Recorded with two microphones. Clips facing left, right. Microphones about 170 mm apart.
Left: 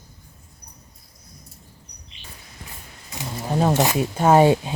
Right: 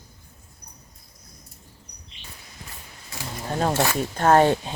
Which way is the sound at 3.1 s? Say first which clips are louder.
Left 3 dB; 20° left (ahead or behind).